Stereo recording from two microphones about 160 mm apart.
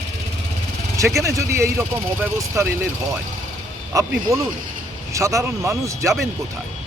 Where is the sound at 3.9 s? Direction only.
20° right (ahead or behind).